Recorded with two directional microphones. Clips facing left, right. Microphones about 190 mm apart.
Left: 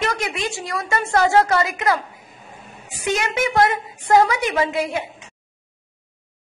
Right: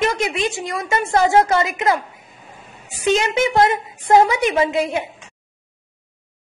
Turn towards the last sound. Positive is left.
turn(degrees=-25)  # may be behind; listen again after turning